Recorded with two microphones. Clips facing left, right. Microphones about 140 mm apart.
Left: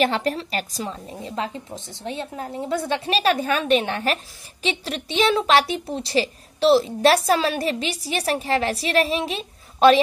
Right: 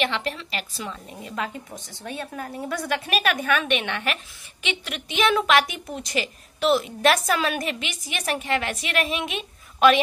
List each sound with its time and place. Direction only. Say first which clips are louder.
0.0 s a woman's voice: left 5 dB; 40° left (ahead or behind)
1.2 s a woman's voice: left 2 dB; 30° left (ahead or behind)